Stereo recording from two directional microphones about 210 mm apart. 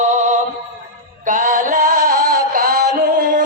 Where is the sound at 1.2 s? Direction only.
40° right (ahead or behind).